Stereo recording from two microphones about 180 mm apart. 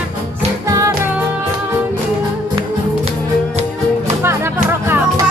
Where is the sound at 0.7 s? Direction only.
15° right (ahead or behind).